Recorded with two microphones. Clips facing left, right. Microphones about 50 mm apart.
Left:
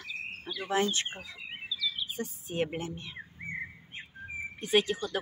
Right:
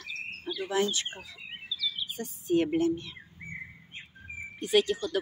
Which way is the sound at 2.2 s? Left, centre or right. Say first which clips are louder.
Right 8 dB; left.